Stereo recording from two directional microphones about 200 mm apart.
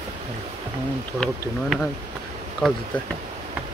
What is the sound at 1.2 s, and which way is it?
Speech, 5° left (ahead or behind).